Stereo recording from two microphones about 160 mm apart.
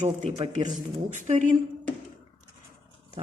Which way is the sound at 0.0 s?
45° right (ahead or behind).